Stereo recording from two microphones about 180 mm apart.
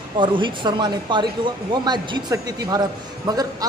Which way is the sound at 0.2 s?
25° right (ahead or behind).